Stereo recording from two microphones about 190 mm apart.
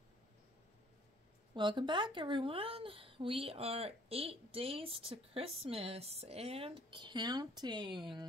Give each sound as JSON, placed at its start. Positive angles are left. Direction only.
{"t": 1.5, "sound": "a woman's voice", "side_deg": -25}